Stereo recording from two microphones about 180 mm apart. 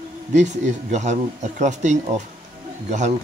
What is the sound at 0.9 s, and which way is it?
Speech, 40° right (ahead or behind).